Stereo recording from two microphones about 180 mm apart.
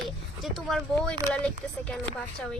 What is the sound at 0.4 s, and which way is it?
Speech, centre (ahead or behind).